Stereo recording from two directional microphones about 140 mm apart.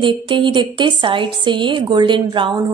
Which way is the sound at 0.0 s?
35° right (ahead or behind).